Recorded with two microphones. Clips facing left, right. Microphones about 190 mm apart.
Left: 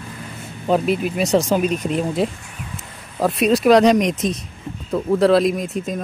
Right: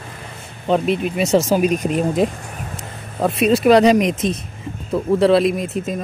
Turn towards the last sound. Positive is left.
turn(degrees=0)  # may be behind; listen again after turning